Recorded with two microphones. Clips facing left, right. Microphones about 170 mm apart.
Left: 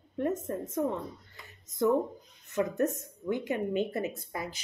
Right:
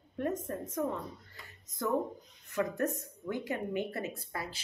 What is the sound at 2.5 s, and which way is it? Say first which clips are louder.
Speech: left 3 dB; 20° left (ahead or behind).